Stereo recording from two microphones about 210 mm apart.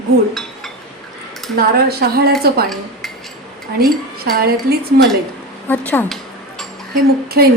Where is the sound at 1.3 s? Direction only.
Centre (ahead or behind).